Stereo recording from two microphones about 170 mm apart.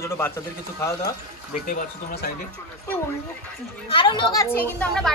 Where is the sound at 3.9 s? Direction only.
30° left (ahead or behind); by 5.1 s 5° left (ahead or behind).